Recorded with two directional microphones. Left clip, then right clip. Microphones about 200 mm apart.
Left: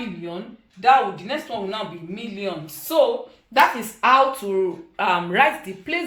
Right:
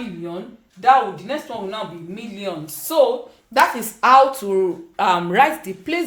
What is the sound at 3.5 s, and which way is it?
Speech, 55° right (ahead or behind).